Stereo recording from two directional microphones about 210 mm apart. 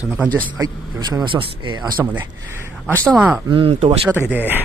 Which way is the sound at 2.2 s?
10° right (ahead or behind).